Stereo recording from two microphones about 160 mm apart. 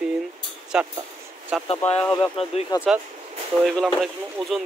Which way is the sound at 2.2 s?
35° left (ahead or behind).